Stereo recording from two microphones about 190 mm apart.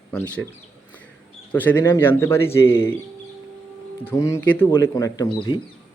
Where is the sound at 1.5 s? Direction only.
10° left (ahead or behind).